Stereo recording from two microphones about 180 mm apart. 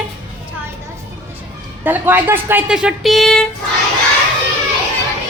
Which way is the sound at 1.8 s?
10° right (ahead or behind).